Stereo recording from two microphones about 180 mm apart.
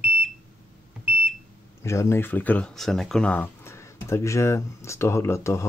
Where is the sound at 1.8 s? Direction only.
15° left (ahead or behind).